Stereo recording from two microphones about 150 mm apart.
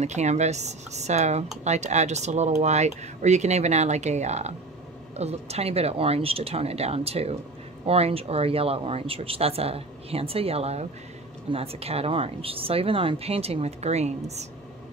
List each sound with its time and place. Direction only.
0.0 s speech: 50° right (ahead or behind)